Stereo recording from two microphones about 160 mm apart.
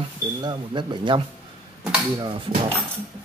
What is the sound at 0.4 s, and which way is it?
Speech, 30° right (ahead or behind).